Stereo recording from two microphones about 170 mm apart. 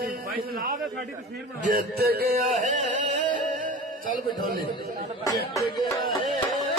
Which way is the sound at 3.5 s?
50° right (ahead or behind).